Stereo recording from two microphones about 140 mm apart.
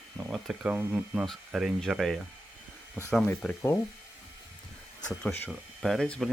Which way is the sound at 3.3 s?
20° left (ahead or behind).